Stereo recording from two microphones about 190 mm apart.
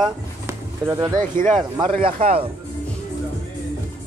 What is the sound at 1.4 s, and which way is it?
Speech, 45° right (ahead or behind).